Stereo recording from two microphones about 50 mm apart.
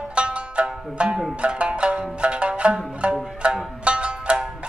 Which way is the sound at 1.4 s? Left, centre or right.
Right.